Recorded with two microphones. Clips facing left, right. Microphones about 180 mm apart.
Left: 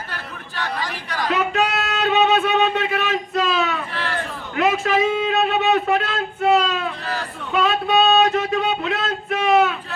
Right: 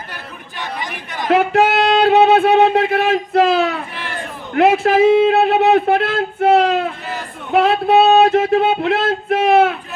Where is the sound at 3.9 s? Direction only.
15° right (ahead or behind).